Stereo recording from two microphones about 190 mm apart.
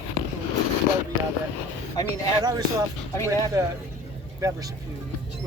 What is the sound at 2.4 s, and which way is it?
Speech, 20° right (ahead or behind).